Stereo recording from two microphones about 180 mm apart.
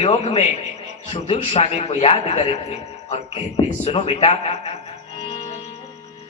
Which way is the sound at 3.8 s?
30° left (ahead or behind).